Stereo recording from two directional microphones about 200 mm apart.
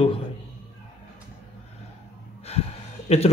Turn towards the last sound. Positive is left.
turn(degrees=30)  # may be behind; listen again after turning